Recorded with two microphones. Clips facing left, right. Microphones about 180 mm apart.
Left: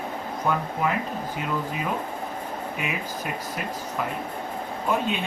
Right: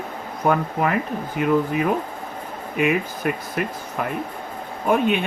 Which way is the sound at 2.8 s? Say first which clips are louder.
Right 14 dB; 60° right (ahead or behind).